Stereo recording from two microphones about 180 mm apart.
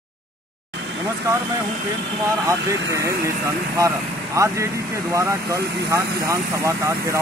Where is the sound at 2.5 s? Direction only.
15° right (ahead or behind).